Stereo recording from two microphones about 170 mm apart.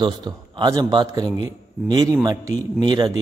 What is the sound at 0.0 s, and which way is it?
A man's voice, 25° right (ahead or behind).